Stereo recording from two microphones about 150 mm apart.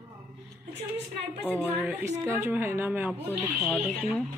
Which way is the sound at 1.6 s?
10° right (ahead or behind).